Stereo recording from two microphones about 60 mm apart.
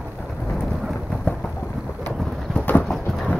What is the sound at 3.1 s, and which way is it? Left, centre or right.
Clip-clop, centre.